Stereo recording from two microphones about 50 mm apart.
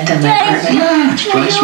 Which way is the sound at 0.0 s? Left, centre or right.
Centre.